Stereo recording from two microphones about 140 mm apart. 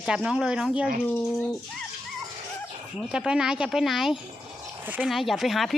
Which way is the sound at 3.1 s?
5° right (ahead or behind).